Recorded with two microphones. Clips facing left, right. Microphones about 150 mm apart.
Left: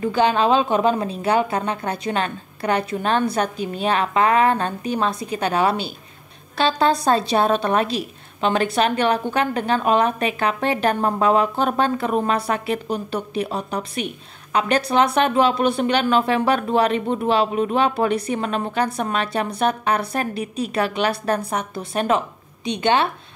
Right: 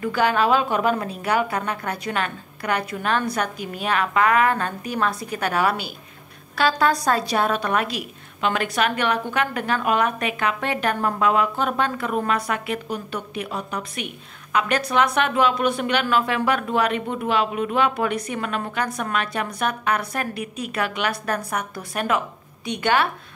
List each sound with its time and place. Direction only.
0.0 s a woman's voice: 25° left (ahead or behind)